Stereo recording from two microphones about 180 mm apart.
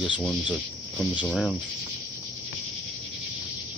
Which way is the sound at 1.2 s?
Centre (ahead or behind).